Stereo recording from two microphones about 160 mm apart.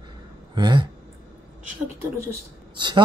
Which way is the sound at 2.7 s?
30° right (ahead or behind).